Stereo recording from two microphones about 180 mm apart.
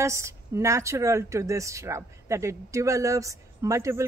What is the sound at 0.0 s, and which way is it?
Speech, 15° right (ahead or behind).